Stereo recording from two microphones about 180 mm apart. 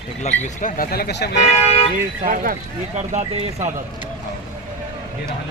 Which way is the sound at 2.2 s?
50° right (ahead or behind).